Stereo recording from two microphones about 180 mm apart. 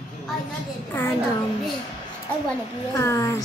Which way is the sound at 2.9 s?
15° left (ahead or behind).